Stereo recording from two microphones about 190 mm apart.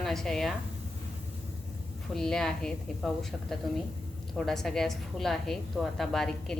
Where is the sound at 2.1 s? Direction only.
5° left (ahead or behind).